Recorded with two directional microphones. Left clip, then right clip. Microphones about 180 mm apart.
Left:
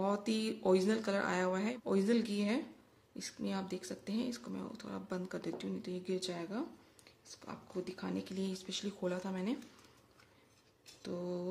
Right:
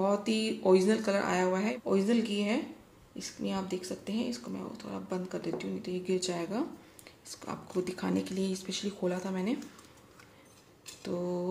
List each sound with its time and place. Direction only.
0.0 s speech: 20° left (ahead or behind)
6.1 s speech: 10° left (ahead or behind)
11.0 s speech: 15° left (ahead or behind)